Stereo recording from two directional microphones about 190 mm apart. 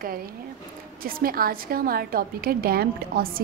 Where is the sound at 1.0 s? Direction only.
50° right (ahead or behind).